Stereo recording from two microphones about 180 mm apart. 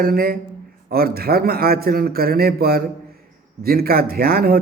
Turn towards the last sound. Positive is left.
turn(degrees=-55)  # may be behind; listen again after turning